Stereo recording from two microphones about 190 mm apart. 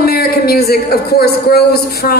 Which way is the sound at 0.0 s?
55° left (ahead or behind).